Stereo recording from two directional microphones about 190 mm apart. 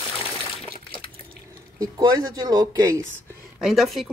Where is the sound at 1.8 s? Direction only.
20° right (ahead or behind).